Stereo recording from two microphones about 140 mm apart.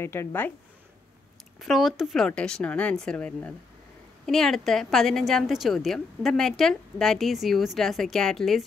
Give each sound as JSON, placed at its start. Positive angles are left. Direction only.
{"t": 0.0, "sound": "speech", "side_deg": 15}
{"t": 1.6, "sound": "a woman's voice", "side_deg": 0}